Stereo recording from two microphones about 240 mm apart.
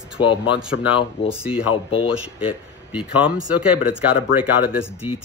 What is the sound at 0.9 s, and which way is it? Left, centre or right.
Speech, left.